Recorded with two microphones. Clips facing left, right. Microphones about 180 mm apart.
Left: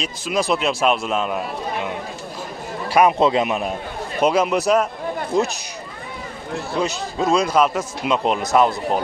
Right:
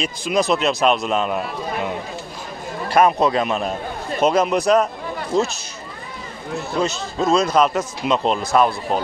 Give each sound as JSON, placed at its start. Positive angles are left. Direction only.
{"t": 0.2, "sound": "a man's voice", "side_deg": 5}
{"t": 2.9, "sound": "a man's voice", "side_deg": 10}
{"t": 6.7, "sound": "a man's voice", "side_deg": 10}